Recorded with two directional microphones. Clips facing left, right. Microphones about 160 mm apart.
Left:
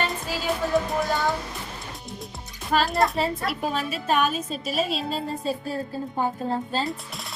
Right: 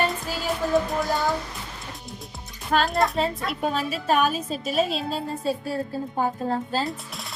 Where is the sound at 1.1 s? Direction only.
Centre (ahead or behind).